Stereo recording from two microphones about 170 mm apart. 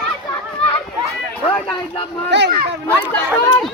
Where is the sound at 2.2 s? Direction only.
90° right.